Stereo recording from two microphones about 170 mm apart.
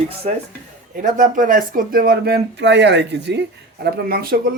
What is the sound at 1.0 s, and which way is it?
Speech, 50° right (ahead or behind).